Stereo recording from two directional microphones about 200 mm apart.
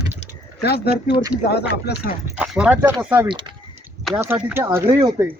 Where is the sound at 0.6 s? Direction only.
55° left (ahead or behind).